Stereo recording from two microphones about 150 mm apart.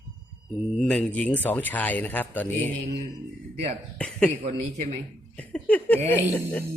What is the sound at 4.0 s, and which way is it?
Speech, 5° left (ahead or behind).